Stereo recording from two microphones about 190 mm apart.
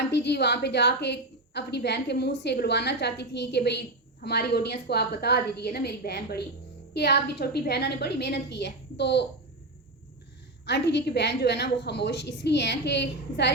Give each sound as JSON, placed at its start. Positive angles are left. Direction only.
{"t": 0.1, "sound": "a woman's voice", "side_deg": 65}
{"t": 10.7, "sound": "a woman's voice", "side_deg": 65}